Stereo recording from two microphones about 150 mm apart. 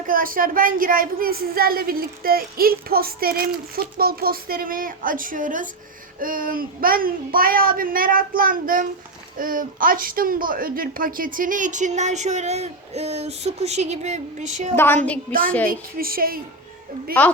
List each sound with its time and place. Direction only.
0.1 s a woman's voice: 70° right (ahead or behind); by 14.7 s 50° right (ahead or behind)
14.8 s a sound: 15° left (ahead or behind)
15.3 s a woman's voice: 70° right (ahead or behind)